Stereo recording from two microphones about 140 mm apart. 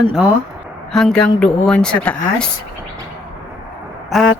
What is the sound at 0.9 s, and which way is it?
Speech, 5° left (ahead or behind).